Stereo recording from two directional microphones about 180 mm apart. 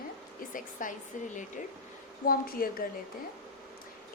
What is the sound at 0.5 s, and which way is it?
A woman's voice, 45° left (ahead or behind).